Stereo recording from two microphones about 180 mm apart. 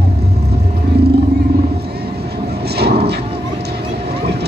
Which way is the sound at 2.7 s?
65° right (ahead or behind).